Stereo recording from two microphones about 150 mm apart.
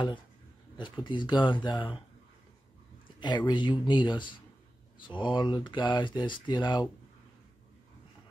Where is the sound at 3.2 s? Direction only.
30° left (ahead or behind).